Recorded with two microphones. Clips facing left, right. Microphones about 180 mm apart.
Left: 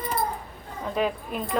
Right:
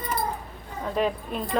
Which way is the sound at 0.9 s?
5° left (ahead or behind).